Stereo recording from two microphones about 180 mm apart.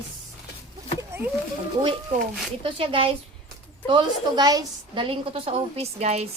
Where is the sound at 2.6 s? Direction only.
30° right (ahead or behind).